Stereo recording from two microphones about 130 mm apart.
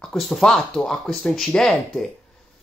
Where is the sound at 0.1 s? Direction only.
Centre (ahead or behind).